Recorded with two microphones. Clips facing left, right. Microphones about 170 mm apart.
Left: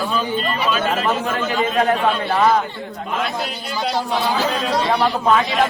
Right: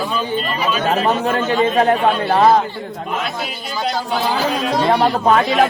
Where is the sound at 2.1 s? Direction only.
35° right (ahead or behind).